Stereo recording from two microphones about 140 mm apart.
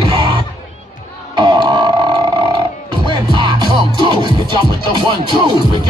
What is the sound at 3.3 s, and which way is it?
Music, 30° right (ahead or behind).